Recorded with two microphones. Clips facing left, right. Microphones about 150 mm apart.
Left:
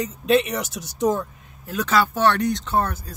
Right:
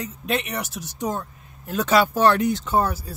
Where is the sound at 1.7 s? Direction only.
20° right (ahead or behind).